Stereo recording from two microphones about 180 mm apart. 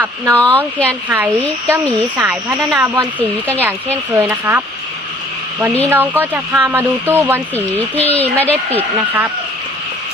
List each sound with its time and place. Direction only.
0.3 s speech: 5° left (ahead or behind)
1.1 s speech: 15° right (ahead or behind)
4.1 s speech: 10° right (ahead or behind)
5.9 s speech: 10° right (ahead or behind)
7.5 s speech: 10° left (ahead or behind)
9.0 s speech: 10° right (ahead or behind)